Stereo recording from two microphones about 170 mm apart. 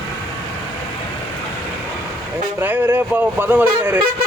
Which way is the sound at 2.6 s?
10° right (ahead or behind).